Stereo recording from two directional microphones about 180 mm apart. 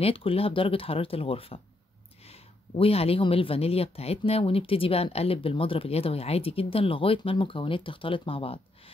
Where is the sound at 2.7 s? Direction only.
30° left (ahead or behind).